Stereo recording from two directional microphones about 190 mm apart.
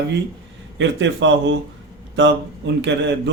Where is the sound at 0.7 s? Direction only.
75° right (ahead or behind).